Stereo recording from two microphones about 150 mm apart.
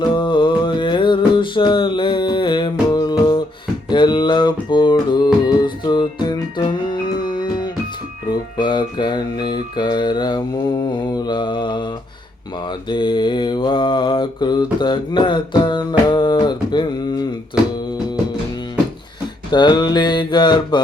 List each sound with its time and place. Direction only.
0.0 s music: 30° left (ahead or behind)
11.1 s mantra: 30° left (ahead or behind)
19.5 s mantra: 30° left (ahead or behind)